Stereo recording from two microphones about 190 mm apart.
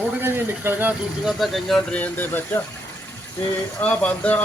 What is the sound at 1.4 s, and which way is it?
Speech, centre (ahead or behind).